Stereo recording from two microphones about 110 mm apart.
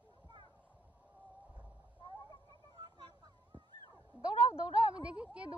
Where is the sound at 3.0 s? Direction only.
40° right (ahead or behind).